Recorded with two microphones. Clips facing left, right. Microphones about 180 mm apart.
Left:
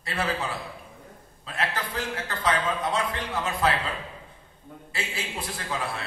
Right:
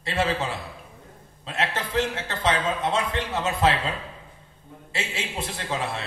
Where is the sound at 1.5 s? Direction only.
25° right (ahead or behind).